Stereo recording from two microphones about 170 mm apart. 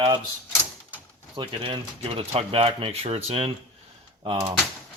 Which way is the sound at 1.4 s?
30° right (ahead or behind).